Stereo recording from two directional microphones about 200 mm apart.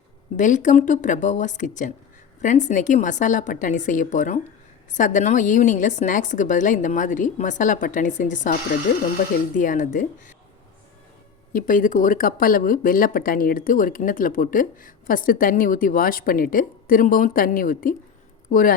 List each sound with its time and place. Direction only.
0.3 s a woman's voice: 40° left (ahead or behind)
9.6 s a woman's voice: 40° left (ahead or behind)
11.5 s speech: 40° left (ahead or behind)